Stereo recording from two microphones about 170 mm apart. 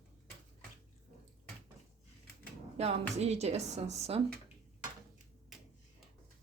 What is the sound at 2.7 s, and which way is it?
A woman's voice, 40° right (ahead or behind).